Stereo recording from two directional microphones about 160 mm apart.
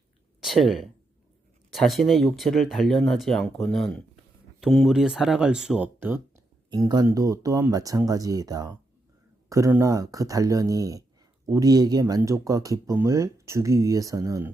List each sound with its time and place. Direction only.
0.4 s speech: centre (ahead or behind)
6.7 s speech: 25° right (ahead or behind)